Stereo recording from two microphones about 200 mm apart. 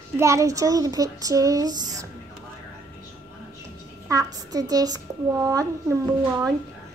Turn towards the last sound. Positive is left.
turn(degrees=-15)  # may be behind; listen again after turning